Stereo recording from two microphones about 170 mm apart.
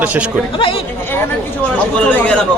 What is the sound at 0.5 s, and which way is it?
Speech, 30° left (ahead or behind).